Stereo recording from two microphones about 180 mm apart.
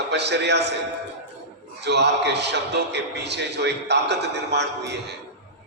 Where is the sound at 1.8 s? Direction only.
70° right (ahead or behind).